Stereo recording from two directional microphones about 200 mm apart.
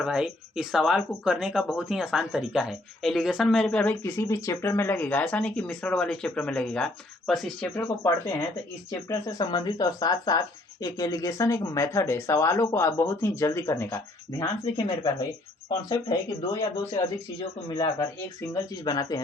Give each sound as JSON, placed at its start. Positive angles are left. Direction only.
{"t": 0.0, "sound": "speech", "side_deg": -5}
{"t": 18.5, "sound": "speech", "side_deg": 20}